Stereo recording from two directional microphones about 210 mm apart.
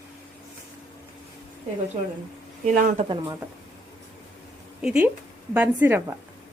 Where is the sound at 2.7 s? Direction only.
35° right (ahead or behind).